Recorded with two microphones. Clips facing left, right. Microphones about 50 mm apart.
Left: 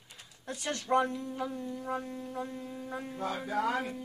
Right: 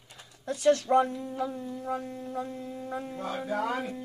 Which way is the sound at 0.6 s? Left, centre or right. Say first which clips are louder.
Right 6 dB; centre.